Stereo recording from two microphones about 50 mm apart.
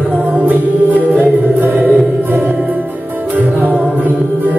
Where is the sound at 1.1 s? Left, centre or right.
Right.